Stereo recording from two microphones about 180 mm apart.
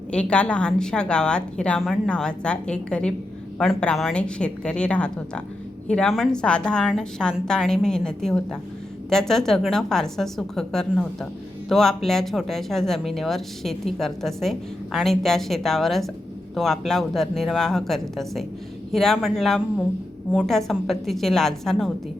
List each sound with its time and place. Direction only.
0.1 s a woman's voice: 5° left (ahead or behind)